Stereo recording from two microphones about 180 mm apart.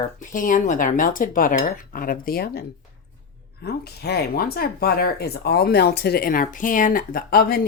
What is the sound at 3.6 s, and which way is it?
A woman's voice, 65° left (ahead or behind).